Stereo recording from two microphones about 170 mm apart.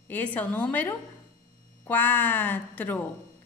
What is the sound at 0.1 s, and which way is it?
A woman's voice, 10° left (ahead or behind).